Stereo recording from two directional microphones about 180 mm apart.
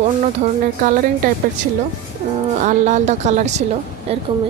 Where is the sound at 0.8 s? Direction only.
45° right (ahead or behind).